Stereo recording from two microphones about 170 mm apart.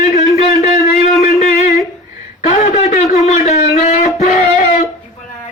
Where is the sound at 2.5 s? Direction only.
40° left (ahead or behind).